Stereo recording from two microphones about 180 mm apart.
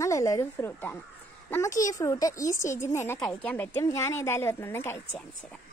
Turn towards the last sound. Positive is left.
turn(degrees=15)  # may be behind; listen again after turning